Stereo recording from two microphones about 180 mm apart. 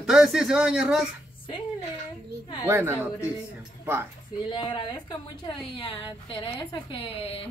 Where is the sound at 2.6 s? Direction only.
10° right (ahead or behind).